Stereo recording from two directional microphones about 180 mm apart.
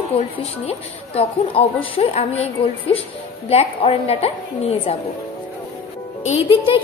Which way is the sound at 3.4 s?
35° left (ahead or behind).